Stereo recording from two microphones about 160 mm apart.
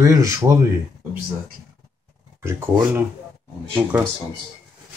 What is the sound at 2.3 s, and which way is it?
Speech, 15° right (ahead or behind).